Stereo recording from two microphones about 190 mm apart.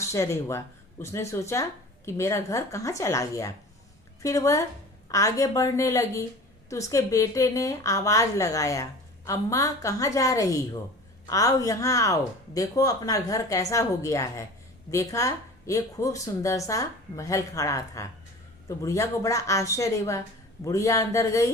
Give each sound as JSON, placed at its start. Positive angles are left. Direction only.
{"t": 0.0, "sound": "a woman's voice", "side_deg": 15}